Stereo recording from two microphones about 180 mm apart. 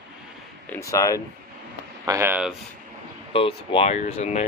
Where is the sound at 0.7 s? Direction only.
15° left (ahead or behind).